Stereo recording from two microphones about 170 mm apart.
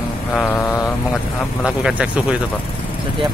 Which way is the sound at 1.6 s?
5° right (ahead or behind).